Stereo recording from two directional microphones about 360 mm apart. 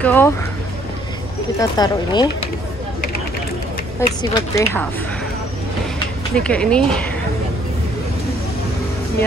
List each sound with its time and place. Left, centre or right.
0.0 s speech: centre
1.6 s speech: centre
4.2 s speech: centre
6.3 s speech: centre